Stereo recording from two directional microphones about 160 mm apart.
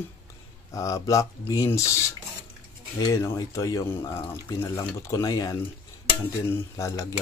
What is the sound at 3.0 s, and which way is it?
Speech, 20° left (ahead or behind).